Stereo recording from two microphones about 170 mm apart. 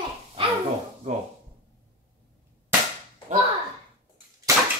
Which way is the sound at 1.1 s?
45° right (ahead or behind).